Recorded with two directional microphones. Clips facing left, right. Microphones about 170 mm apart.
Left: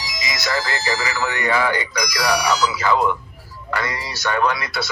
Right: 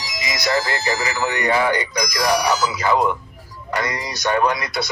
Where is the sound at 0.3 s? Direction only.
20° right (ahead or behind).